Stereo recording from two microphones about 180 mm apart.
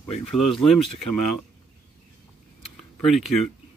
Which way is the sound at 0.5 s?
Centre (ahead or behind).